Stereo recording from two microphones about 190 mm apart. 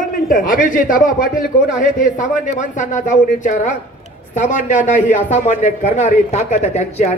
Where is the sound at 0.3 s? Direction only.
45° left (ahead or behind).